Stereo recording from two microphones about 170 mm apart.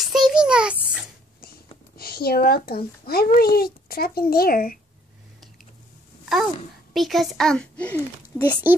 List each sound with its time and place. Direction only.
0.0 s a sound: centre (ahead or behind)
2.0 s a child's voice: 65° left (ahead or behind)
6.9 s a child's voice: centre (ahead or behind)